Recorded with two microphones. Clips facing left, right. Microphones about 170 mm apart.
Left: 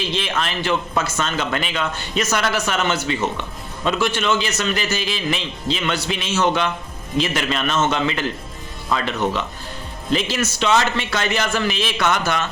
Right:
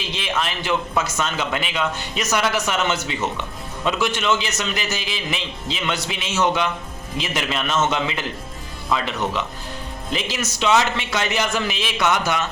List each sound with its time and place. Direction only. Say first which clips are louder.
0.1 s a man's voice: left 2 dB; 15° right (ahead or behind)
10.1 s a man's voice: left 5 dB; 15° right (ahead or behind)